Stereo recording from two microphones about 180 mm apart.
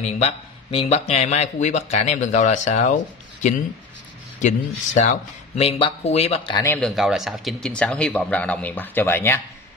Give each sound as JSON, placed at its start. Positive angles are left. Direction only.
{"t": 0.0, "sound": "speech", "side_deg": 35}
{"t": 4.4, "sound": "speech", "side_deg": 45}
{"t": 5.6, "sound": "speech", "side_deg": 30}
{"t": 6.6, "sound": "speech", "side_deg": 10}
{"t": 6.9, "sound": "speech", "side_deg": 0}